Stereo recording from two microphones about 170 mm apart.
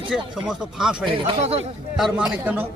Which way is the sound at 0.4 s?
5° right (ahead or behind).